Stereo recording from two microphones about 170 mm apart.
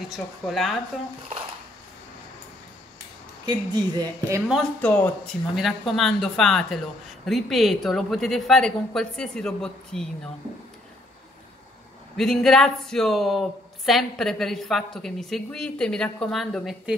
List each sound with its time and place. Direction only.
0.1 s speech: centre (ahead or behind)
3.4 s speech: 25° right (ahead or behind)
4.8 s speech: 10° left (ahead or behind)
12.2 s speech: 5° left (ahead or behind)